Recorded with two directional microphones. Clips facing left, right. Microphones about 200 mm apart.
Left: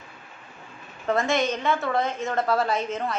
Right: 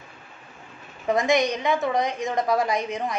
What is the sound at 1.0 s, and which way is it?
A woman's voice, 15° right (ahead or behind).